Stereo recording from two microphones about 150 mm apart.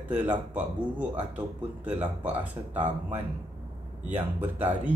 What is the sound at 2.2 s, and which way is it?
Speech, 10° right (ahead or behind).